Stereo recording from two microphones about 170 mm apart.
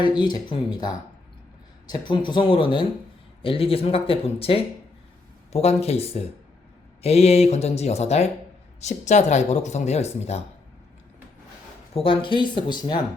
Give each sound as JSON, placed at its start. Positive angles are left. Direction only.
{"t": 0.2, "sound": "speech", "side_deg": 25}
{"t": 11.9, "sound": "speech", "side_deg": 30}